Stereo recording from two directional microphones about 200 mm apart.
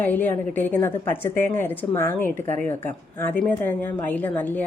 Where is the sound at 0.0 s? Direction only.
10° left (ahead or behind).